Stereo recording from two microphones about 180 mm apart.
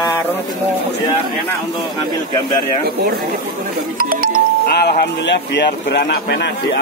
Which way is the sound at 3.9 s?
50° right (ahead or behind).